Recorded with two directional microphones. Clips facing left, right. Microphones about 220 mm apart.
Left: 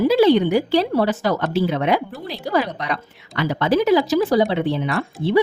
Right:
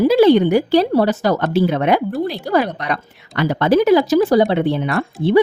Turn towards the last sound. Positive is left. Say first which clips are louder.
# right 4 dB
turn(degrees=-50)  # may be behind; listen again after turning